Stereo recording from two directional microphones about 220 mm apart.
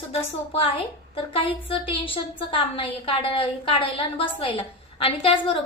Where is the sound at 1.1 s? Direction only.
25° left (ahead or behind).